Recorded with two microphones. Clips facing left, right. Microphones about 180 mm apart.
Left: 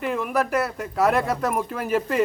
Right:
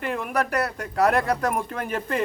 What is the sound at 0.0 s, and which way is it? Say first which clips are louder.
Speech: left 2 dB; centre (ahead or behind).